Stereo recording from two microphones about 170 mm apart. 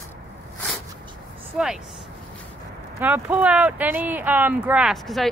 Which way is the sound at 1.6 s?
5° right (ahead or behind).